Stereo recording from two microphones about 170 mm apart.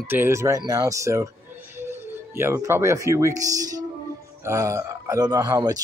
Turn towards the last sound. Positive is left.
turn(degrees=-20)  # may be behind; listen again after turning